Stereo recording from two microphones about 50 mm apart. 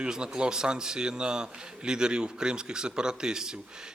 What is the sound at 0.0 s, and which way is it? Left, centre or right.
A man's voice, centre.